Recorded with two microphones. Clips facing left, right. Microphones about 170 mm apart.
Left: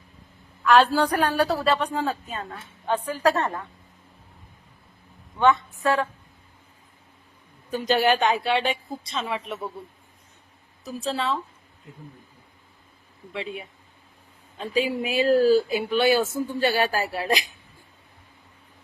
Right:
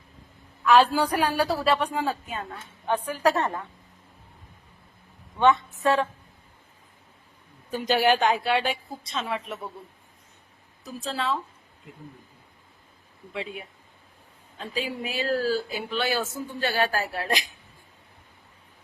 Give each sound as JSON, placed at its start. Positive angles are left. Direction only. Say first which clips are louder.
{"t": 0.6, "sound": "a woman's voice", "louder": "left 1 dB", "side_deg": -5}
{"t": 5.4, "sound": "a woman's voice", "louder": "even", "side_deg": -20}
{"t": 7.7, "sound": "a woman's voice", "louder": "left 1 dB", "side_deg": -10}
{"t": 10.8, "sound": "a woman's voice", "louder": "left 2 dB", "side_deg": 0}
{"t": 14.8, "sound": "speech", "louder": "left 7 dB", "side_deg": 15}